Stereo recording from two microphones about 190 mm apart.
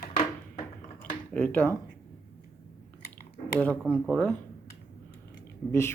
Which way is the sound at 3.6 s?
5° left (ahead or behind).